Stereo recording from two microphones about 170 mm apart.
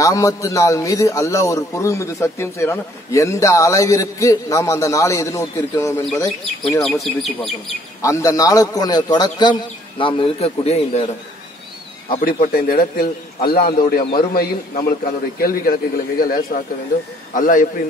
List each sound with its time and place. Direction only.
0.0 s a man's voice: 20° left (ahead or behind)
6.2 s speech: centre (ahead or behind)
8.0 s a man's voice: 20° left (ahead or behind); by 11.1 s 40° left (ahead or behind)
12.2 s a man's voice: 55° left (ahead or behind)